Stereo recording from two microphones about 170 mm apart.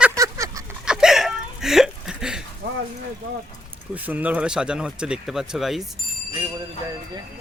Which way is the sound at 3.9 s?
10° right (ahead or behind).